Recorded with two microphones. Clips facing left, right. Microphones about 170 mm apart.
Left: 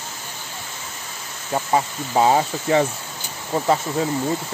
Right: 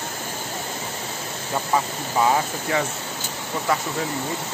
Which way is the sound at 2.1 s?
30° left (ahead or behind).